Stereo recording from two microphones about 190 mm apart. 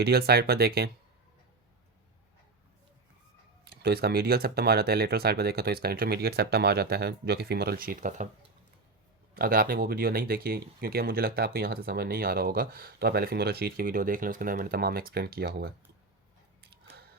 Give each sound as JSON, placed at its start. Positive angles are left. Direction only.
{"t": 0.0, "sound": "speech", "side_deg": -55}
{"t": 3.7, "sound": "speech", "side_deg": -55}
{"t": 9.3, "sound": "speech", "side_deg": -50}